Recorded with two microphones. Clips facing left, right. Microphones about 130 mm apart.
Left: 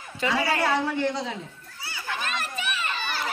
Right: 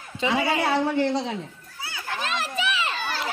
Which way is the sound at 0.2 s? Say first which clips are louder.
Right 1 dB; 20° right (ahead or behind).